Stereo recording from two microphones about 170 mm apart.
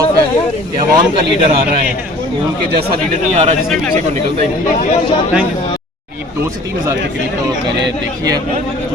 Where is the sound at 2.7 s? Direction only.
70° right (ahead or behind).